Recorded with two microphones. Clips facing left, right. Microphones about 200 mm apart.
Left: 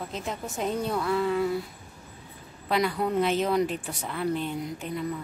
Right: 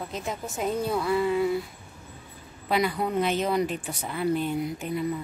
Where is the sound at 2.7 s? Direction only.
5° right (ahead or behind).